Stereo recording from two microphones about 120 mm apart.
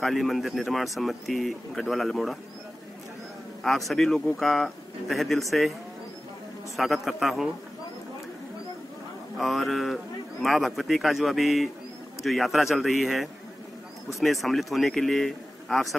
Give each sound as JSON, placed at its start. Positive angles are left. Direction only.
{"t": 0.0, "sound": "speech", "side_deg": 0}
{"t": 3.6, "sound": "speech", "side_deg": 0}
{"t": 6.8, "sound": "speech", "side_deg": 0}
{"t": 9.4, "sound": "speech", "side_deg": 0}